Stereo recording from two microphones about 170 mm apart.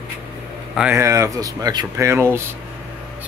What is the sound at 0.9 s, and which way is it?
Speech, 20° right (ahead or behind).